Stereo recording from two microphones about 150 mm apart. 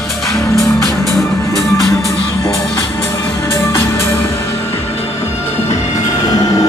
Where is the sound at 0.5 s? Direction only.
20° left (ahead or behind).